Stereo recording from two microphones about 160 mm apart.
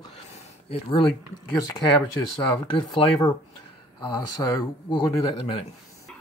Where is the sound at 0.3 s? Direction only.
35° left (ahead or behind).